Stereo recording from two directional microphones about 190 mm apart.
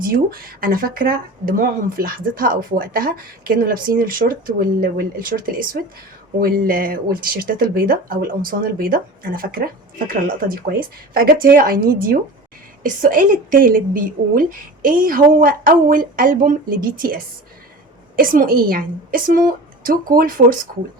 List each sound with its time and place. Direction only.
0.1 s speech: 50° right (ahead or behind)